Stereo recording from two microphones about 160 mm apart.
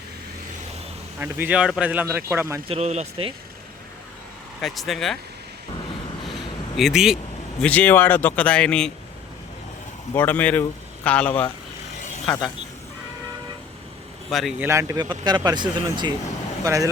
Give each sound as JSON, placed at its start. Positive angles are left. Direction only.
{"t": 1.2, "sound": "speech", "side_deg": -10}
{"t": 2.6, "sound": "speech", "side_deg": -40}
{"t": 4.6, "sound": "speech", "side_deg": 0}
{"t": 6.2, "sound": "a sound", "side_deg": 0}
{"t": 7.6, "sound": "speech", "side_deg": 10}
{"t": 10.2, "sound": "speech", "side_deg": 10}
{"t": 14.3, "sound": "speech", "side_deg": 0}
{"t": 14.6, "sound": "speech", "side_deg": -20}